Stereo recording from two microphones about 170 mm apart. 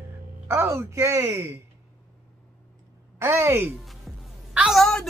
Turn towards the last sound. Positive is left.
turn(degrees=0)  # may be behind; listen again after turning